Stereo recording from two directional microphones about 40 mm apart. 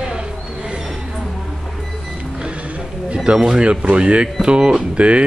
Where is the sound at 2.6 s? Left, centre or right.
Right.